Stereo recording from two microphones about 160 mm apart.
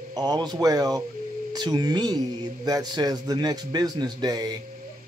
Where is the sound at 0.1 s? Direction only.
25° right (ahead or behind).